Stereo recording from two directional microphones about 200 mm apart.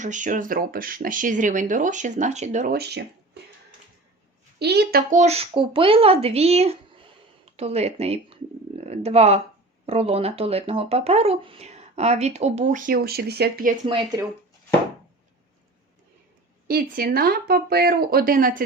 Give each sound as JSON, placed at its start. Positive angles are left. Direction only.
{"t": 0.0, "sound": "speech", "side_deg": -40}
{"t": 2.7, "sound": "speech", "side_deg": -55}
{"t": 4.6, "sound": "speech", "side_deg": -55}
{"t": 5.2, "sound": "speech", "side_deg": -30}
{"t": 16.6, "sound": "speech", "side_deg": -45}